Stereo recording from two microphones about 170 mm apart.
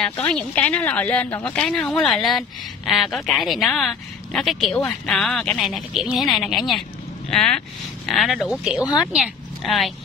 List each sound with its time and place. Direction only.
0.0 s a woman's voice: 5° left (ahead or behind)